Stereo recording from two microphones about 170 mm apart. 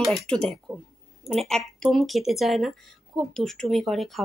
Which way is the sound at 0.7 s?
15° right (ahead or behind).